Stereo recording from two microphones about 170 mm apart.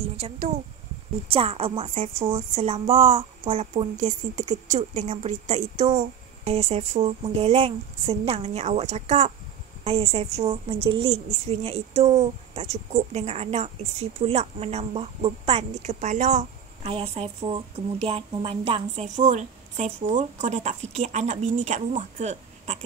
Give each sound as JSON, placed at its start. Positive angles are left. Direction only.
{"t": 0.0, "sound": "a sound", "side_deg": -35}
{"t": 1.3, "sound": "a woman's voice", "side_deg": -35}
{"t": 4.0, "sound": "speech", "side_deg": -45}
{"t": 5.9, "sound": "a woman's voice", "side_deg": -30}
{"t": 16.9, "sound": "a woman's voice", "side_deg": -35}